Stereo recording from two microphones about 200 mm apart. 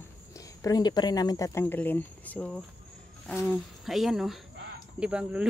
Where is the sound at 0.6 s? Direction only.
20° left (ahead or behind).